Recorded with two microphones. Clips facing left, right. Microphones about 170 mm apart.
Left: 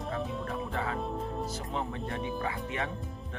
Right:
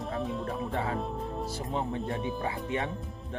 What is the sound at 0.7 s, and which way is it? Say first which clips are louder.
Speech: right 1 dB; 30° right (ahead or behind).